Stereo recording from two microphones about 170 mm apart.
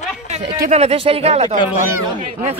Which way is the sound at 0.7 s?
40° right (ahead or behind).